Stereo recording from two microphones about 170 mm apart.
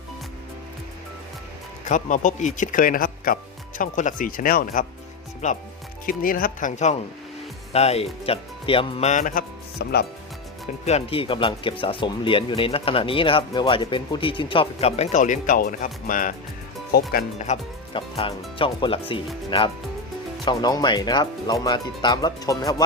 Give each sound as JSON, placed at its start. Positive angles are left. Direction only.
{"t": 1.8, "sound": "speech", "side_deg": 50}
{"t": 6.1, "sound": "speech", "side_deg": 55}
{"t": 10.8, "sound": "speech", "side_deg": 35}
{"t": 16.9, "sound": "speech", "side_deg": 60}
{"t": 17.3, "sound": "speech", "side_deg": 45}
{"t": 17.9, "sound": "speech", "side_deg": 35}